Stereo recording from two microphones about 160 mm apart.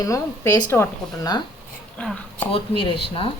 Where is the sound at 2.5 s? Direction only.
35° left (ahead or behind).